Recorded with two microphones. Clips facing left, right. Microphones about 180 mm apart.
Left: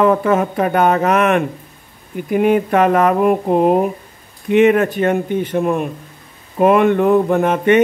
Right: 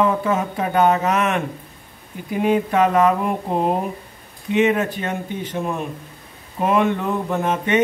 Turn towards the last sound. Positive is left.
turn(degrees=60)  # may be behind; listen again after turning